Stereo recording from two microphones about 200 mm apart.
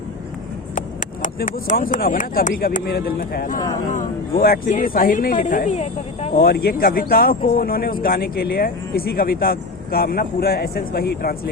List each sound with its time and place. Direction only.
0.8 s speech: 40° left (ahead or behind)
6.3 s speech: 50° left (ahead or behind)